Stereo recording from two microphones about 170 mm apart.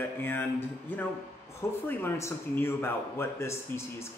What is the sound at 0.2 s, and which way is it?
Speech, 10° left (ahead or behind).